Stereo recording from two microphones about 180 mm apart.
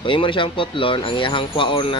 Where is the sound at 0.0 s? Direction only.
30° left (ahead or behind).